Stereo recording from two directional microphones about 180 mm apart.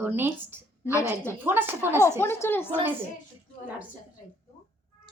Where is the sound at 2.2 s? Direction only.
15° left (ahead or behind).